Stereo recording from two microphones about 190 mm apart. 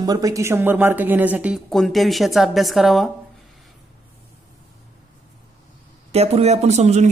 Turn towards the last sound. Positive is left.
turn(degrees=-35)  # may be behind; listen again after turning